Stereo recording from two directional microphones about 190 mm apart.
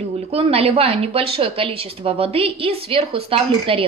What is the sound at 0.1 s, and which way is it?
Speech, 30° right (ahead or behind).